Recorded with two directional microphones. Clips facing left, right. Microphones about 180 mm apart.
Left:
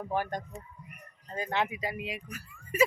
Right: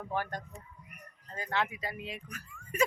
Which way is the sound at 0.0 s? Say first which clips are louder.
Left 3 dB; 15° left (ahead or behind).